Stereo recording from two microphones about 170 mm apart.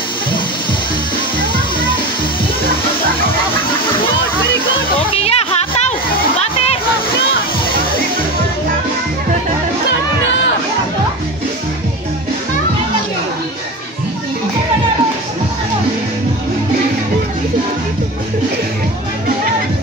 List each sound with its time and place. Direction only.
5.1 s music: 35° left (ahead or behind)